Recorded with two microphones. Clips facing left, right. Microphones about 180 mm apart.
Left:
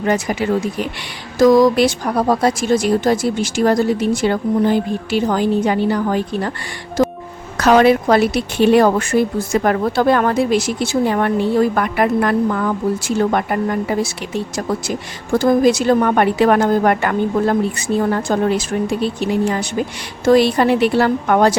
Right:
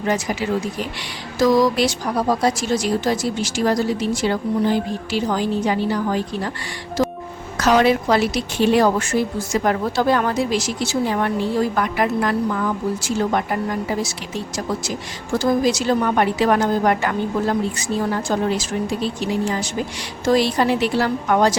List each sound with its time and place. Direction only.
0.0 s a woman's voice: 55° left (ahead or behind)
7.0 s music: 50° left (ahead or behind)
7.5 s a woman's voice: 55° left (ahead or behind)